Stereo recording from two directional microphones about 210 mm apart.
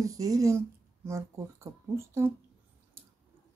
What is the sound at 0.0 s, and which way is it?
Speech, 15° right (ahead or behind).